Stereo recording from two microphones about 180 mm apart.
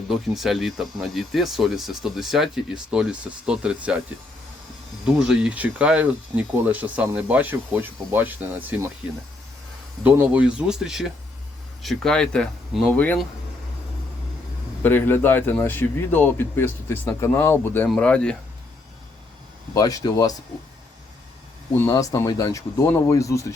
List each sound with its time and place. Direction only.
0.1 s speech: centre (ahead or behind)
5.0 s speech: 5° right (ahead or behind)
10.0 s speech: 10° right (ahead or behind)
14.8 s a man's voice: 10° left (ahead or behind)
19.7 s speech: 20° left (ahead or behind)
21.8 s a man's voice: 15° left (ahead or behind)